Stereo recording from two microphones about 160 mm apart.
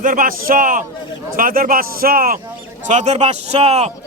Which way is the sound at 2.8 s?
45° right (ahead or behind).